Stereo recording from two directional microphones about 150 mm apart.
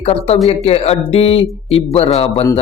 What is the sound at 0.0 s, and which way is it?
Speech, 40° left (ahead or behind).